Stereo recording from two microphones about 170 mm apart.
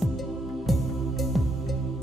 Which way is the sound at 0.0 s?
Centre (ahead or behind).